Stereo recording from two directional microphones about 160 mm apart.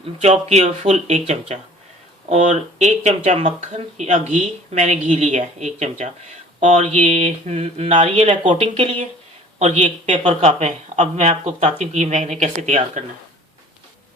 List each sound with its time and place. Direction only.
0.2 s speech: 40° right (ahead or behind)